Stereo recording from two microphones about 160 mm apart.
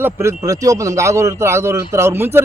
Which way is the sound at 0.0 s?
15° right (ahead or behind).